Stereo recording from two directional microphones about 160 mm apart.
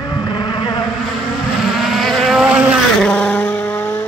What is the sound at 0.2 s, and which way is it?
Vehicle, 25° left (ahead or behind).